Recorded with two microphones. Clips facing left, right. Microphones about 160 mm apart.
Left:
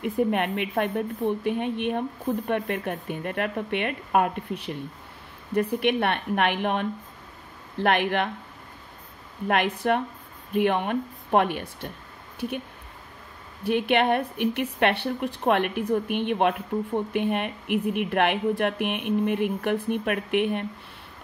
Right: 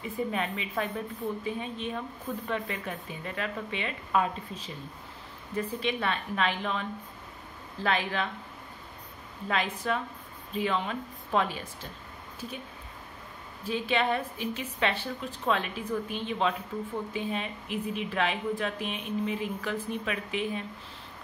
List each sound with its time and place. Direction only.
0.0 s speech: 65° left (ahead or behind)
9.5 s speech: 65° left (ahead or behind)
13.7 s speech: 65° left (ahead or behind)